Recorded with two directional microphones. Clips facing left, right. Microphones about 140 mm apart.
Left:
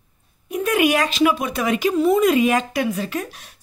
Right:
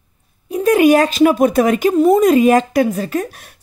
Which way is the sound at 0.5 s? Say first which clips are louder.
Right 7 dB; 35° right (ahead or behind).